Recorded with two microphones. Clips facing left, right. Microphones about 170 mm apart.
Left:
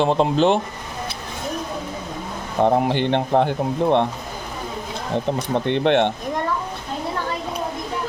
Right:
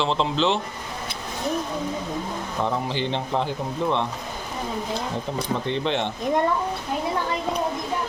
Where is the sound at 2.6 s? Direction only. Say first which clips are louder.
Left 9 dB; 55° left (ahead or behind).